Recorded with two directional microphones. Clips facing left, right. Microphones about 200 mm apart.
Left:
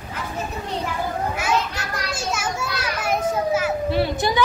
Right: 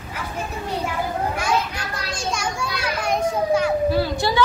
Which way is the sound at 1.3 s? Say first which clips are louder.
Even; 5° left (ahead or behind).